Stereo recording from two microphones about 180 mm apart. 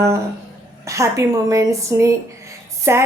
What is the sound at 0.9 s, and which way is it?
A woman's voice, 15° right (ahead or behind).